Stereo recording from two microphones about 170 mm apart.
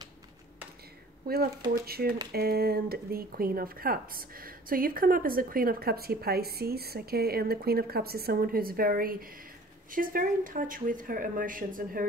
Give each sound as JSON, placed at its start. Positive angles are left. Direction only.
{"t": 1.2, "sound": "speech", "side_deg": -65}